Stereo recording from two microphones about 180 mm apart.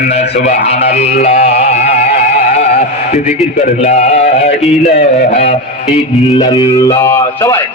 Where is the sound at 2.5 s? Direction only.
40° left (ahead or behind).